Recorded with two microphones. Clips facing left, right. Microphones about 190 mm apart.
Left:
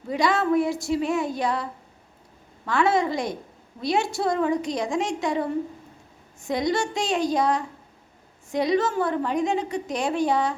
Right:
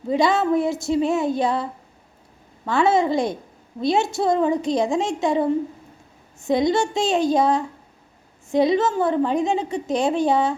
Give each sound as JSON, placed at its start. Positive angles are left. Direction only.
{"t": 0.1, "sound": "a woman's voice", "side_deg": -25}
{"t": 2.6, "sound": "a woman's voice", "side_deg": -25}